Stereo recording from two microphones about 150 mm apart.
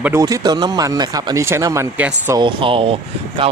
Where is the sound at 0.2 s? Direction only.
25° right (ahead or behind).